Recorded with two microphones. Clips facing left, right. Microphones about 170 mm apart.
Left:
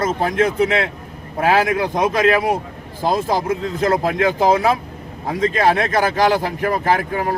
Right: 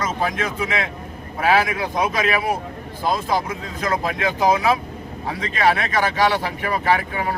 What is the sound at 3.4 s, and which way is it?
Speech, 50° left (ahead or behind).